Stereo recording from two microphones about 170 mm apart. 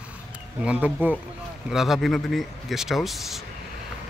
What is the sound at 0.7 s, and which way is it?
Speech, 10° right (ahead or behind).